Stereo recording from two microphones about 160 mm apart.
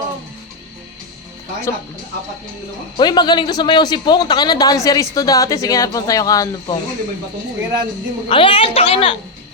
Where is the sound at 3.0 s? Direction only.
25° left (ahead or behind).